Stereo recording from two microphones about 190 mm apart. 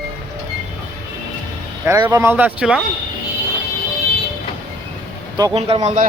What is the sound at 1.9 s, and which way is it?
Speech, 15° right (ahead or behind).